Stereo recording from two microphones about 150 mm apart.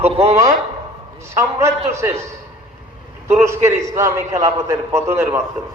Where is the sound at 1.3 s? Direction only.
20° right (ahead or behind).